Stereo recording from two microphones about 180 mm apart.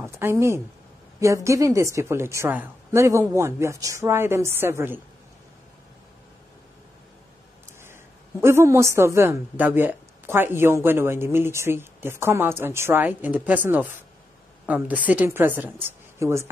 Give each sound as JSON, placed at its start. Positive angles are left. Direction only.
{"t": 0.0, "sound": "a woman's voice", "side_deg": -15}
{"t": 7.8, "sound": "a woman's voice", "side_deg": -15}